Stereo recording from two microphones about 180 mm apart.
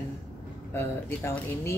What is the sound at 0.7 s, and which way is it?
Speech, 15° left (ahead or behind).